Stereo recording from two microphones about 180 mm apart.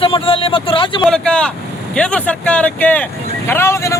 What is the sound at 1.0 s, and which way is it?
Speech, 5° left (ahead or behind).